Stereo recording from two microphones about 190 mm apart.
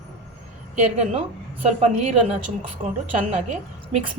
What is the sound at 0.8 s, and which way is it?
A woman's voice, 35° right (ahead or behind).